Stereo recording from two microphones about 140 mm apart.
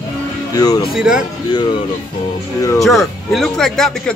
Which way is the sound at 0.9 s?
5° right (ahead or behind).